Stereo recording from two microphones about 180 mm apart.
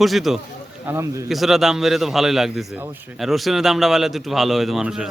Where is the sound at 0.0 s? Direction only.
Centre (ahead or behind).